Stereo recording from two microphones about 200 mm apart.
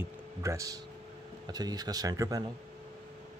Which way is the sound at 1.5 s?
20° right (ahead or behind).